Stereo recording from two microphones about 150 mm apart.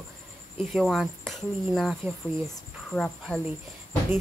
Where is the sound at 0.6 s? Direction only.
Centre (ahead or behind).